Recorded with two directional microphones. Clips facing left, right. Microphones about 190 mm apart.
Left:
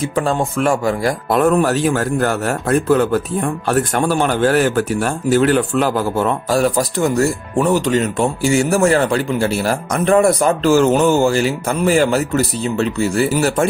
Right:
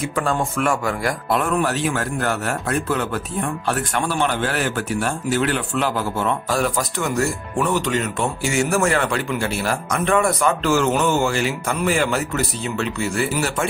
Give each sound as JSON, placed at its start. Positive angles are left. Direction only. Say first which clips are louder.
{"t": 0.0, "sound": "speech", "louder": "left 4 dB", "side_deg": 30}